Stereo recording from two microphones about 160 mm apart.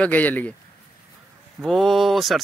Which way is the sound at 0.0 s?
10° left (ahead or behind).